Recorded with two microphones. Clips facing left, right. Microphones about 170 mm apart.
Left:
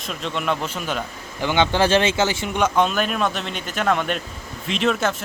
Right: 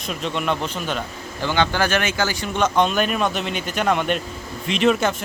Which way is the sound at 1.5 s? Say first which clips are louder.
Left 2 dB; 20° left (ahead or behind).